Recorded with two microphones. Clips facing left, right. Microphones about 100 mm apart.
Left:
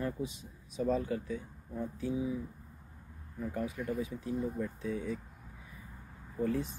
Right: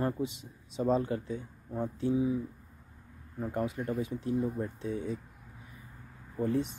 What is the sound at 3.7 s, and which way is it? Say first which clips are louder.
Speech: right 2 dB; 35° right (ahead or behind).